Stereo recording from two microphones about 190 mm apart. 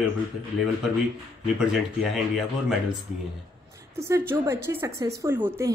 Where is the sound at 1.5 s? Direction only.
5° right (ahead or behind).